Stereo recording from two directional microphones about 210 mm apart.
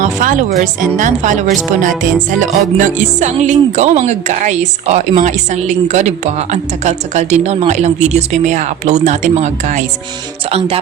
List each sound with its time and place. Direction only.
0.0 s speech: 40° right (ahead or behind)